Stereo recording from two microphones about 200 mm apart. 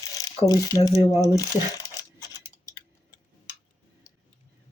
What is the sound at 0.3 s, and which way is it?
Speech, 20° left (ahead or behind).